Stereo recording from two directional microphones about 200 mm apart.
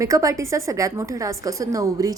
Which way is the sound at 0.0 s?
15° right (ahead or behind).